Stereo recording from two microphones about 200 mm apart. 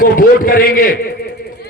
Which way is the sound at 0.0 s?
45° left (ahead or behind).